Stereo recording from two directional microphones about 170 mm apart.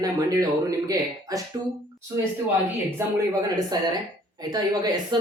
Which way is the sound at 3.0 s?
15° right (ahead or behind).